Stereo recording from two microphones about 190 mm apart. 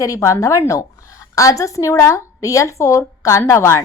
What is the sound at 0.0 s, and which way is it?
A woman's voice, 15° left (ahead or behind).